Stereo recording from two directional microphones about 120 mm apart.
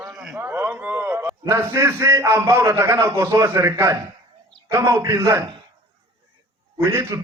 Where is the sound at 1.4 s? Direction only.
25° right (ahead or behind).